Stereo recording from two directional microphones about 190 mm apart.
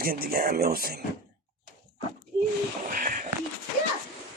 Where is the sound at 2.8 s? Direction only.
45° right (ahead or behind).